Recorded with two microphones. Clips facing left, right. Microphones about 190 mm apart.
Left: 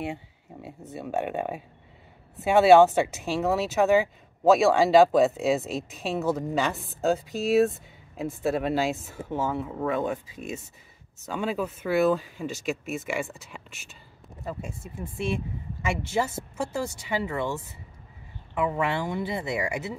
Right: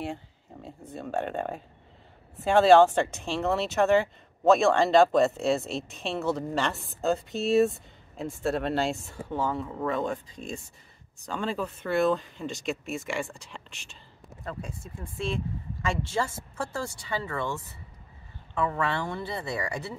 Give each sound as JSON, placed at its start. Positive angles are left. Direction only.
{"t": 0.1, "sound": "a sound", "side_deg": 5}
{"t": 0.9, "sound": "a woman's voice", "side_deg": 5}
{"t": 16.1, "sound": "speech", "side_deg": 15}